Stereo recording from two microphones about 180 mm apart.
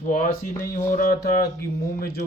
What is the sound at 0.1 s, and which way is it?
Speech, 50° left (ahead or behind).